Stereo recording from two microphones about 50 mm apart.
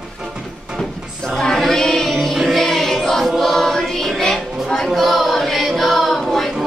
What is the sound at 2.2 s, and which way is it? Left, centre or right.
Music, centre.